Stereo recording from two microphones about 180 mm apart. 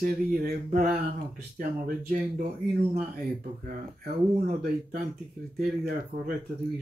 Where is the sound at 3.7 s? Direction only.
50° right (ahead or behind).